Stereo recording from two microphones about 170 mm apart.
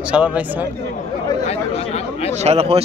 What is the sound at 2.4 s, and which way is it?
Speech, 35° right (ahead or behind).